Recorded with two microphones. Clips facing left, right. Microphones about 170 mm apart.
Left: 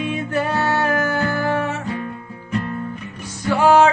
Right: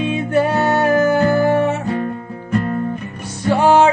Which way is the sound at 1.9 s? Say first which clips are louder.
Right 6 dB; 45° right (ahead or behind).